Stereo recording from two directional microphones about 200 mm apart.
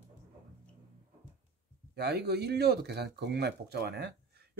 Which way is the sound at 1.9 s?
55° right (ahead or behind).